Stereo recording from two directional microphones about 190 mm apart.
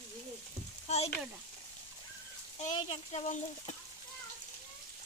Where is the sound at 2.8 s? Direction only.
35° left (ahead or behind).